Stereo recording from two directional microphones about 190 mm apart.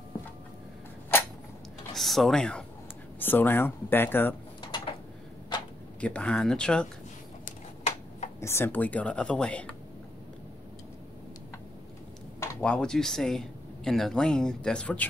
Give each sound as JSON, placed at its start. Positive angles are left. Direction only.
{"t": 2.0, "sound": "speech", "side_deg": 0}
{"t": 4.6, "sound": "a sound", "side_deg": 25}
{"t": 5.9, "sound": "speech", "side_deg": 5}
{"t": 7.4, "sound": "a sound", "side_deg": 40}
{"t": 8.4, "sound": "speech", "side_deg": 15}
{"t": 12.4, "sound": "speech", "side_deg": 10}